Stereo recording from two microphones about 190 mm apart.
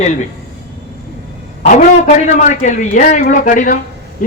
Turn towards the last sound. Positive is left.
turn(degrees=45)  # may be behind; listen again after turning